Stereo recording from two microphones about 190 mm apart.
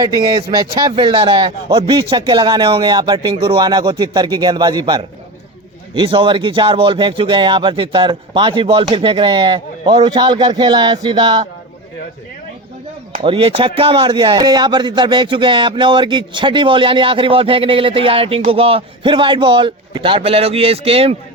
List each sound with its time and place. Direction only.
0.0 s a man's voice: 20° right (ahead or behind)
13.2 s a man's voice: 30° right (ahead or behind)